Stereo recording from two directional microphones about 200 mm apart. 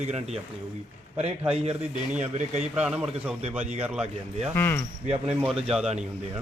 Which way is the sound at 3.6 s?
35° right (ahead or behind).